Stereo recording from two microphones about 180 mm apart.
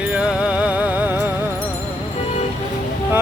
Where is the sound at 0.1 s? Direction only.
5° right (ahead or behind).